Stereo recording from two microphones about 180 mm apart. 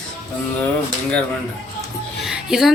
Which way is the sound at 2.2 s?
Centre (ahead or behind).